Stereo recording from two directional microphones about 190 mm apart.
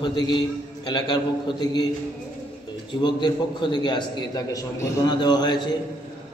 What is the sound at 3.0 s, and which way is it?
A man's voice, 25° left (ahead or behind).